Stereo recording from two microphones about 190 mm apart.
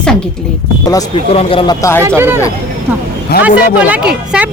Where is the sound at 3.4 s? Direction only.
5° right (ahead or behind).